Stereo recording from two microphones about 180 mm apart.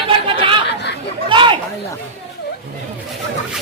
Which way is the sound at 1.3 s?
25° right (ahead or behind).